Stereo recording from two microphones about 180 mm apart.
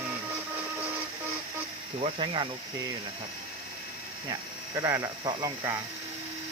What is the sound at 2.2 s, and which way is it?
Speech, 30° right (ahead or behind).